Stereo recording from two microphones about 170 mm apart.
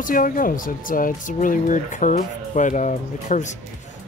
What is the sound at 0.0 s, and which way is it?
Speech, 55° left (ahead or behind).